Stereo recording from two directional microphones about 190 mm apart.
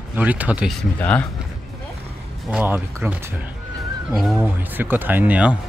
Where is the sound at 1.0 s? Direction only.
10° left (ahead or behind).